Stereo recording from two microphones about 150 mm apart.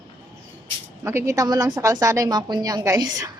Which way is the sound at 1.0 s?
20° right (ahead or behind).